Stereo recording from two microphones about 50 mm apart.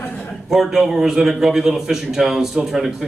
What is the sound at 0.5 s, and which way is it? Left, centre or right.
A man's voice, centre.